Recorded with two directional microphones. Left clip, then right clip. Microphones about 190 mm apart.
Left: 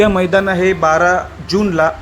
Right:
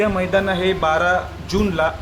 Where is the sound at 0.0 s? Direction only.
45° left (ahead or behind).